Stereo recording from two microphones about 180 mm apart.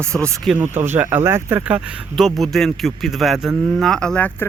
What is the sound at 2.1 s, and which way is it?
Speech, centre (ahead or behind).